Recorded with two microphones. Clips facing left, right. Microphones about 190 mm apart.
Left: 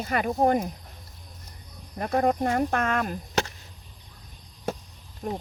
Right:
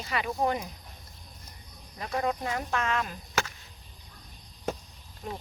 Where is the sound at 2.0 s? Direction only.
50° left (ahead or behind).